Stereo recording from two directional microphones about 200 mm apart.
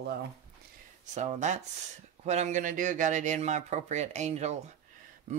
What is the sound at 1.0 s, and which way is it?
Speech, 35° right (ahead or behind).